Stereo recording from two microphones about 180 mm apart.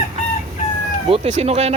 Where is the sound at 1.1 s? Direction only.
35° right (ahead or behind).